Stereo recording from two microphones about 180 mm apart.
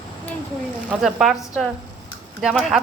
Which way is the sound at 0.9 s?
Centre (ahead or behind).